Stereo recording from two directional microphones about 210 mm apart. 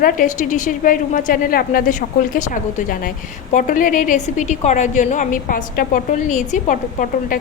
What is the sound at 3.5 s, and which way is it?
A woman's voice, 40° left (ahead or behind).